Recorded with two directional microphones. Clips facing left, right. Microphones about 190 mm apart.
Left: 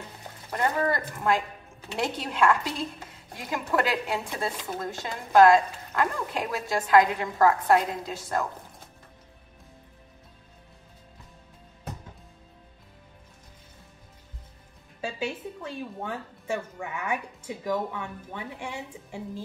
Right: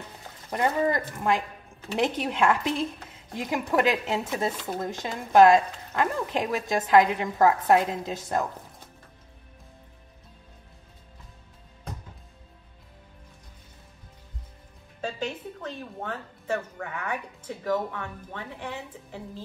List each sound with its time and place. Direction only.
0.5 s speech: 15° right (ahead or behind)
15.0 s speech: 10° left (ahead or behind)